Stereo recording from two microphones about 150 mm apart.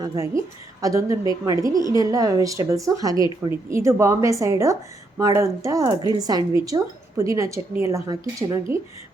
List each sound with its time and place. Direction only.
0.0 s a woman's voice: 20° right (ahead or behind)